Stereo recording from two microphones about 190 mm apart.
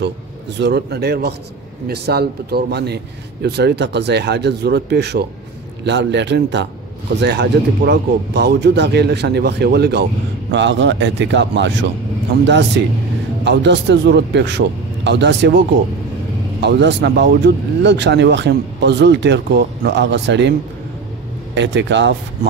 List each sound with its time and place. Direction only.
0.6 s speech: 65° right (ahead or behind)
10.5 s speech: 70° right (ahead or behind)
16.6 s speech: 65° right (ahead or behind)
21.5 s speech: 70° right (ahead or behind)